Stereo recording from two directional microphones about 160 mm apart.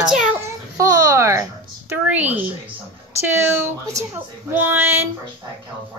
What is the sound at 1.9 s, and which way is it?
Speech, 10° right (ahead or behind).